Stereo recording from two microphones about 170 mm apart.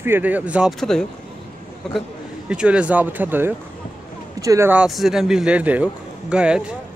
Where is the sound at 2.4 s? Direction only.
5° right (ahead or behind).